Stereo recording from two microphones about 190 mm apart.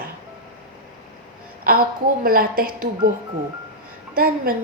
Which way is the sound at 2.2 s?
50° right (ahead or behind).